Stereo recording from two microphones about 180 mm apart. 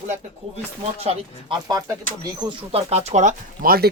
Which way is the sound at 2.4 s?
30° right (ahead or behind).